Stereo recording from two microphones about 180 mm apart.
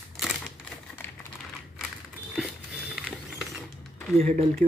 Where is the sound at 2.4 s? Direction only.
5° right (ahead or behind).